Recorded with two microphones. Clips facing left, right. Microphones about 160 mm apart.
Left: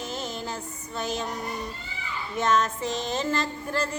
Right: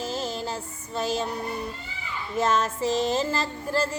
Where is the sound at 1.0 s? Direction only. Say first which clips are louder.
Right 3 dB; 30° right (ahead or behind).